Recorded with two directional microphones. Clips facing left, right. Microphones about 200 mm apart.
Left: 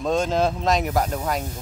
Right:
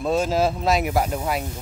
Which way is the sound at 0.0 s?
5° right (ahead or behind).